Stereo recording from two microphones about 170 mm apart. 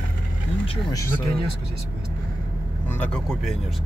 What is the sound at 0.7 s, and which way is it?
Speech, 25° left (ahead or behind).